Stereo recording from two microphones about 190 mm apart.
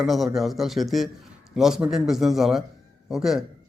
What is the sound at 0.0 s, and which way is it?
A man's voice, centre (ahead or behind).